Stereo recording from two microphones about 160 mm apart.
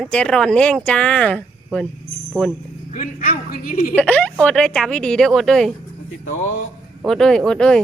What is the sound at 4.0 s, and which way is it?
Speech, 10° left (ahead or behind).